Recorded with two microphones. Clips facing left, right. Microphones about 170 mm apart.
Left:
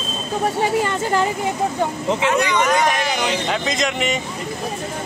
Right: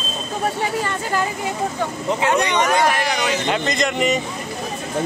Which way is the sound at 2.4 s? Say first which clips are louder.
Even; 30° right (ahead or behind).